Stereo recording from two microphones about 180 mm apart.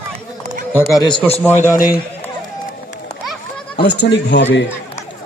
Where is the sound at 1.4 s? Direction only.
15° left (ahead or behind).